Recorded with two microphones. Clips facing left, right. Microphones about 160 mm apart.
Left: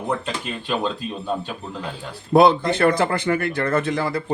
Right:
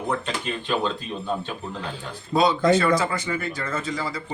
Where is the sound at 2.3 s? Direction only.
60° left (ahead or behind).